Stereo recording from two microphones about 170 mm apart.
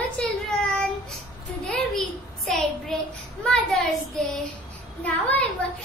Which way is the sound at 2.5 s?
Centre (ahead or behind).